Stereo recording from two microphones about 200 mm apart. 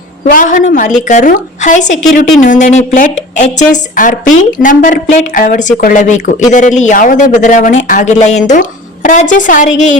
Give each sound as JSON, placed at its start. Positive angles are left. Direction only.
{"t": 0.3, "sound": "a man's voice", "side_deg": 40}